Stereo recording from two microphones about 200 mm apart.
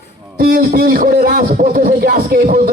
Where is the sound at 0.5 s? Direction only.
45° right (ahead or behind).